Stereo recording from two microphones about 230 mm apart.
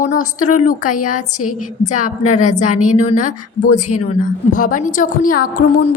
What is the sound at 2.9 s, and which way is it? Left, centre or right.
Speech, left.